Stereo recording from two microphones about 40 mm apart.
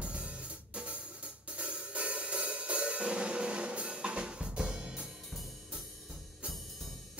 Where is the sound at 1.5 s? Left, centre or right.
Right.